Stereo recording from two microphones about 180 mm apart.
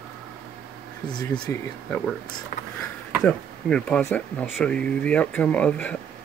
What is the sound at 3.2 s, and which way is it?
Speech, 5° left (ahead or behind).